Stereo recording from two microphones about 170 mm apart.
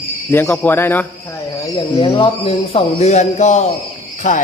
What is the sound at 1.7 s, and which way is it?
Speech, 30° left (ahead or behind).